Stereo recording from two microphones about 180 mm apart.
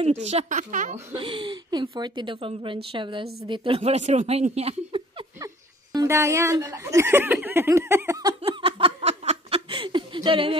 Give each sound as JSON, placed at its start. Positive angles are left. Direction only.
{"t": 0.0, "sound": "speech", "side_deg": -35}
{"t": 1.1, "sound": "a woman's voice", "side_deg": -30}
{"t": 5.9, "sound": "speech", "side_deg": -15}
{"t": 8.4, "sound": "laughter", "side_deg": -30}